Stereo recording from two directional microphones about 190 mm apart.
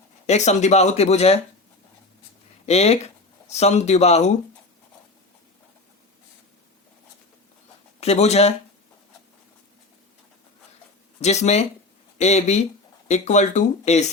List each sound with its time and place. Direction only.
0.3 s speech: 35° left (ahead or behind)
2.6 s speech: 35° left (ahead or behind)
8.0 s speech: 35° left (ahead or behind)
11.2 s speech: 35° left (ahead or behind)